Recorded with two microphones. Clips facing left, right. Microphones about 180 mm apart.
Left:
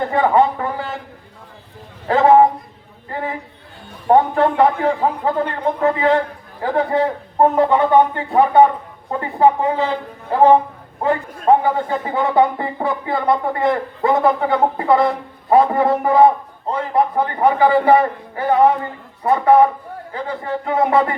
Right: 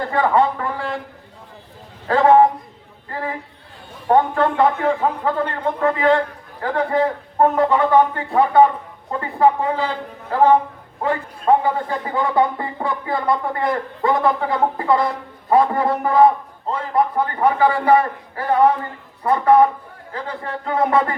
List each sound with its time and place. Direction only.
0.0 s a man's voice: 25° left (ahead or behind)
2.0 s a man's voice: 25° left (ahead or behind)
3.1 s chatter: 25° left (ahead or behind)
4.1 s a man's voice: 25° left (ahead or behind)